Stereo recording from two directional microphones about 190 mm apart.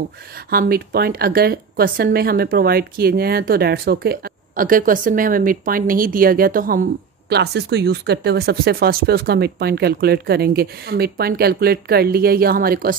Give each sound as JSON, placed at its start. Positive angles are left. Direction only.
{"t": 0.5, "sound": "a woman's voice", "side_deg": -50}